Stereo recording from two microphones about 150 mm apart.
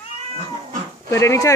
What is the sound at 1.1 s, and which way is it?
Speech, 20° left (ahead or behind).